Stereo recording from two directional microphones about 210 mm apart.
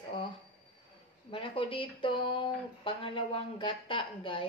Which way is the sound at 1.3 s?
25° left (ahead or behind).